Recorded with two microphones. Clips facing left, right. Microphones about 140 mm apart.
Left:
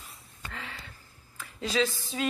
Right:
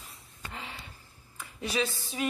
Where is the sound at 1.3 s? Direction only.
15° right (ahead or behind).